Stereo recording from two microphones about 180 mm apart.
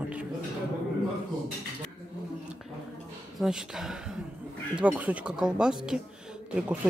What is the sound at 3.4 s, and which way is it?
Speech, centre (ahead or behind).